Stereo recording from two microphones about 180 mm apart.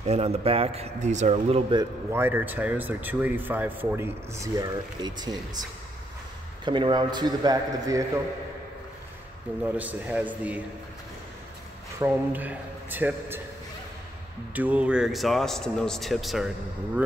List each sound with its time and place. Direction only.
0.0 s a man's voice: 35° right (ahead or behind)
2.1 s speech: 10° right (ahead or behind)
6.6 s a man's voice: 25° right (ahead or behind)
9.6 s speech: 10° right (ahead or behind)
12.0 s speech: 10° right (ahead or behind)
14.5 s speech: 10° right (ahead or behind)